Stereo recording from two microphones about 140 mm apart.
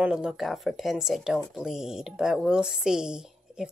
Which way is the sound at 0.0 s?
5° right (ahead or behind).